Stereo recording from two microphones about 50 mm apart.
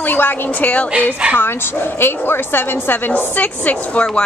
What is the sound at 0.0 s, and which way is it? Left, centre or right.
Speech, left.